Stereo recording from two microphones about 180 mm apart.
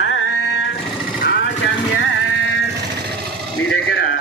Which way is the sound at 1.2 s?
75° left (ahead or behind).